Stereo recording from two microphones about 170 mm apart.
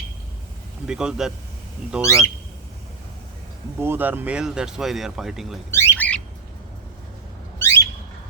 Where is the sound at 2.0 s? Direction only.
15° left (ahead or behind).